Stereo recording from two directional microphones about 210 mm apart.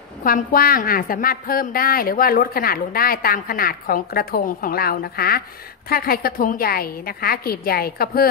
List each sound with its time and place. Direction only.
0.2 s a woman's voice: 40° left (ahead or behind)